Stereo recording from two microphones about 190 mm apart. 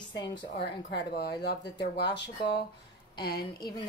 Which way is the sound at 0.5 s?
60° left (ahead or behind).